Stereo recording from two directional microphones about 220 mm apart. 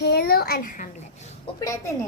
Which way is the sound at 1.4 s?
15° left (ahead or behind).